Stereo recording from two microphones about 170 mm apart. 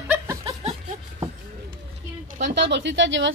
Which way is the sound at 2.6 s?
90° right.